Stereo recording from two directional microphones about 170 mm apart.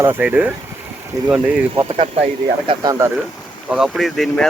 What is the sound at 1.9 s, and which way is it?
Speech, 35° right (ahead or behind).